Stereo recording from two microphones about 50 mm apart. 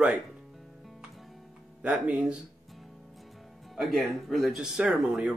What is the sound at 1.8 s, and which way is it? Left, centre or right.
Speech, right.